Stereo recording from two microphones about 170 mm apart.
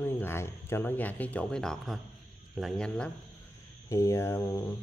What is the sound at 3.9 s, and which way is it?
Speech, 20° left (ahead or behind).